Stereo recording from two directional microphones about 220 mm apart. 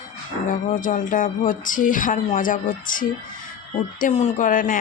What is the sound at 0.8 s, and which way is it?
Speech, 35° left (ahead or behind).